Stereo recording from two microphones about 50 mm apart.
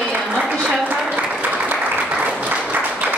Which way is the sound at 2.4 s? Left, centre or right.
Right.